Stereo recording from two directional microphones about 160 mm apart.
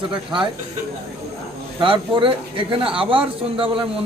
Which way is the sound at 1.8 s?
30° right (ahead or behind).